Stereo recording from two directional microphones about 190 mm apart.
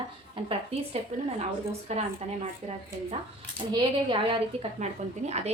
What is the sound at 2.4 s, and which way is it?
A woman's voice, 35° right (ahead or behind).